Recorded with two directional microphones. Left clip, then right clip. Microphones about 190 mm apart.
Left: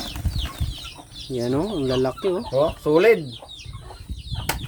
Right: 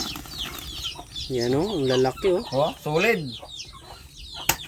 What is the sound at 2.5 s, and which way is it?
Speech, 35° left (ahead or behind).